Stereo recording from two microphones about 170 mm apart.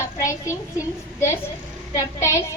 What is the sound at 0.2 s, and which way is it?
Speech, 15° left (ahead or behind).